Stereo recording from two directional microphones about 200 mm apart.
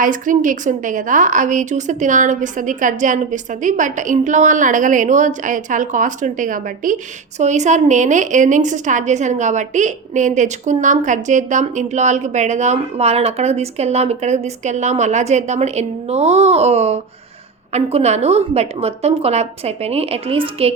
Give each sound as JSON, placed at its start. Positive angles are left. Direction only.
{"t": 0.0, "sound": "a woman's voice", "side_deg": -40}